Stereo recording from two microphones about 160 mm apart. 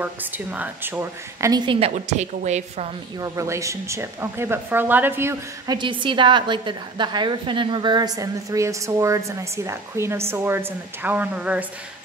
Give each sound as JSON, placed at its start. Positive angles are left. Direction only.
{"t": 0.0, "sound": "a woman's voice", "side_deg": -10}
{"t": 1.7, "sound": "a woman's voice", "side_deg": -40}
{"t": 3.2, "sound": "a woman's voice", "side_deg": -20}
{"t": 5.8, "sound": "a woman's voice", "side_deg": -30}